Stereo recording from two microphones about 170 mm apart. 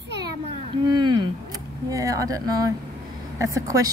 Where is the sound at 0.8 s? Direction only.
25° right (ahead or behind).